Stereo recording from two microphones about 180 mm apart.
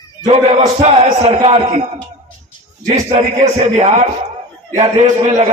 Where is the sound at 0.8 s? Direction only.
35° right (ahead or behind).